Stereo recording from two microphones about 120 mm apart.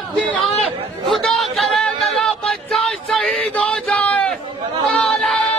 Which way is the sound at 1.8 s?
5° left (ahead or behind).